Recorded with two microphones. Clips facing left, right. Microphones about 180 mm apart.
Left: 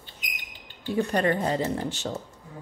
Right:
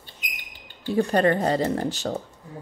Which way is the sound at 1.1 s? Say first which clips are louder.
Right 4 dB; 35° right (ahead or behind).